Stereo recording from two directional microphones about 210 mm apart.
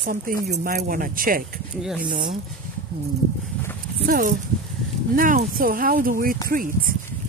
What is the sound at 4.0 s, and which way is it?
Speech, 40° right (ahead or behind).